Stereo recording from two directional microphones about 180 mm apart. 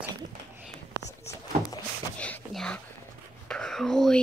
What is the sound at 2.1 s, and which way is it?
Whispering, 5° left (ahead or behind).